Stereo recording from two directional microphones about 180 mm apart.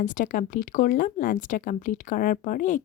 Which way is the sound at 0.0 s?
45° left (ahead or behind).